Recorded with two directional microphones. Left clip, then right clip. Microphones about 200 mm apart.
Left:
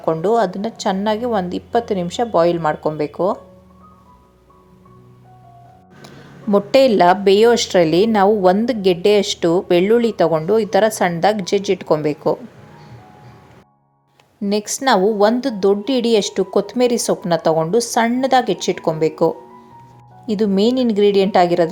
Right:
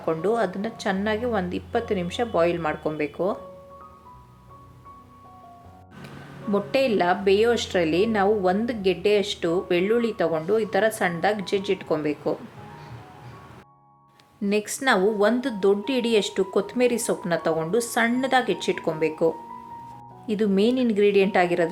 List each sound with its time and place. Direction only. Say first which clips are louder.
0.0 s a woman's voice: left 7 dB; 25° left (ahead or behind)
6.5 s a woman's voice: left 10 dB; 40° left (ahead or behind)
14.4 s a woman's voice: left 5 dB; 25° left (ahead or behind)